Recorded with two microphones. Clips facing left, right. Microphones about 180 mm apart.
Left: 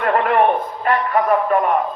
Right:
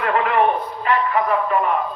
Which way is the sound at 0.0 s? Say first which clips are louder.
Left 2 dB; 45° left (ahead or behind).